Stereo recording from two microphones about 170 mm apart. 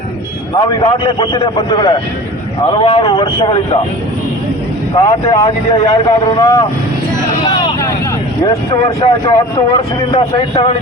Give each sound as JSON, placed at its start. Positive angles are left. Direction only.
{"t": 0.5, "sound": "speech", "side_deg": 25}
{"t": 4.9, "sound": "speech", "side_deg": 20}
{"t": 7.4, "sound": "vehicle", "side_deg": 20}
{"t": 8.4, "sound": "speech", "side_deg": 25}